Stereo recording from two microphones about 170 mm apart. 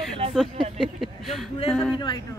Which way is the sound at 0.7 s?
Centre (ahead or behind).